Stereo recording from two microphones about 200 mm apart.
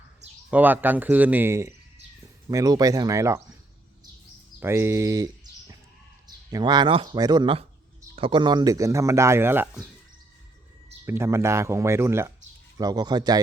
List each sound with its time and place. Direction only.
0.5 s speech: 10° right (ahead or behind)
4.6 s speech: 15° right (ahead or behind)
11.0 s speech: 15° right (ahead or behind)